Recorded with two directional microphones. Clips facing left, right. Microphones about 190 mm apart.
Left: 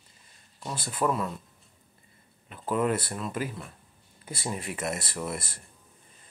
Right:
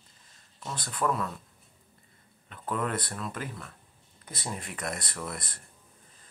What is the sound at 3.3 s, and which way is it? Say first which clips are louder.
Speech: left 5 dB; 10° left (ahead or behind).